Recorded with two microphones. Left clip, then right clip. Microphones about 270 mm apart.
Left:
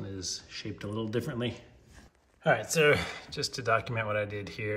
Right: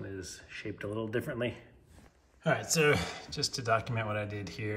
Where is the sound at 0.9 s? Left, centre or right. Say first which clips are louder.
Left 1 dB; centre.